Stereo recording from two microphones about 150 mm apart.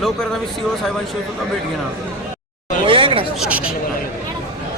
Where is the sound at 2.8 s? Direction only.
35° right (ahead or behind).